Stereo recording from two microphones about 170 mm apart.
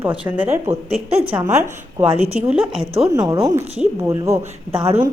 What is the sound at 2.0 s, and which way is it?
A woman's voice, 15° right (ahead or behind).